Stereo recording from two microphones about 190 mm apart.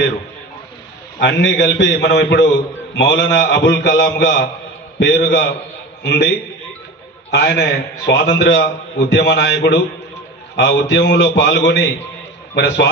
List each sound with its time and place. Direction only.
1.2 s a man's voice: 65° left (ahead or behind)